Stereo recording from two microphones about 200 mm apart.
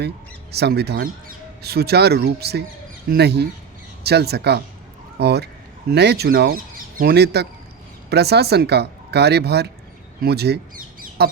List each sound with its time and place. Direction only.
0.5 s speech: 55° right (ahead or behind)
11.2 s goose: 55° right (ahead or behind)